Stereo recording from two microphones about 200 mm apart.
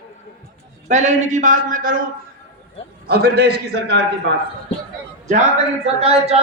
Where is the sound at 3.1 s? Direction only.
50° right (ahead or behind).